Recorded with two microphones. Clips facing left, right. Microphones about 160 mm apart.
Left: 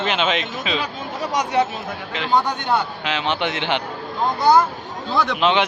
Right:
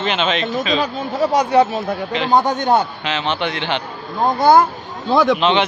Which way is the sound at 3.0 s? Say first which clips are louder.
Right 1 dB; 10° left (ahead or behind).